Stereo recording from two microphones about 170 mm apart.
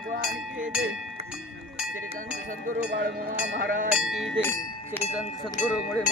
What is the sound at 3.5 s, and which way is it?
Speech, 55° right (ahead or behind).